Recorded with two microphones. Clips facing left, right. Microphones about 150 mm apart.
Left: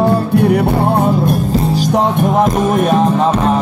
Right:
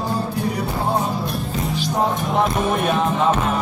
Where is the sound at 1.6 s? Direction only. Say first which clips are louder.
Left 8 dB; 30° left (ahead or behind).